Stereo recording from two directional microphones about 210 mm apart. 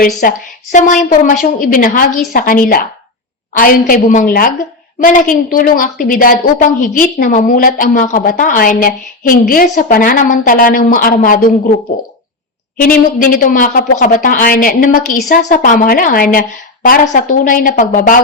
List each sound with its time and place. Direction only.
0.0 s a woman's voice: 40° left (ahead or behind)
12.7 s a woman's voice: 40° left (ahead or behind)